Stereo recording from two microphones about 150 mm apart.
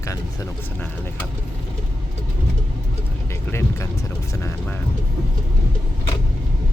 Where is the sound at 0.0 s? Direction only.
20° left (ahead or behind).